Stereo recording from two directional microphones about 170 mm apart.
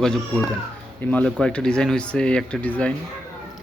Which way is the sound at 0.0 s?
5° left (ahead or behind).